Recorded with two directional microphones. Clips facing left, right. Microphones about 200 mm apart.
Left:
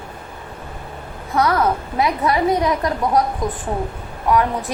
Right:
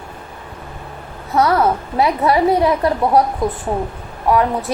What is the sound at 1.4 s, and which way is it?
Speech, 35° right (ahead or behind).